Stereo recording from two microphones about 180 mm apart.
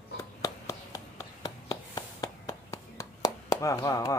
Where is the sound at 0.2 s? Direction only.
15° left (ahead or behind).